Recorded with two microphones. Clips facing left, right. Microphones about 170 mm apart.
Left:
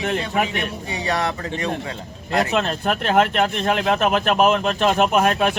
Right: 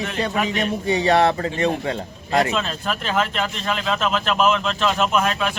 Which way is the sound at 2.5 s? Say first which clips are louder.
Left 4 dB; 60° left (ahead or behind).